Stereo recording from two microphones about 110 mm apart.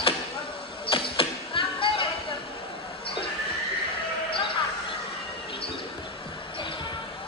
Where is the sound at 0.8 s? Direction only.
55° left (ahead or behind).